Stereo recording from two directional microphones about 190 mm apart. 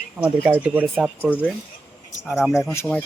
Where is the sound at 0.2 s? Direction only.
10° right (ahead or behind).